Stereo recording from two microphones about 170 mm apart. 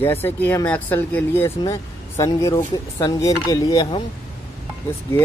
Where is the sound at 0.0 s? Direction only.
10° left (ahead or behind).